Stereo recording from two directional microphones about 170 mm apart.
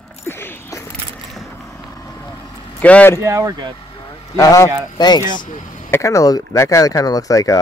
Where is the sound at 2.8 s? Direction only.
10° left (ahead or behind).